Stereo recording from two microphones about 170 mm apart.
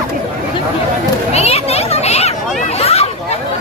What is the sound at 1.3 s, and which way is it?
Children playing, 40° left (ahead or behind).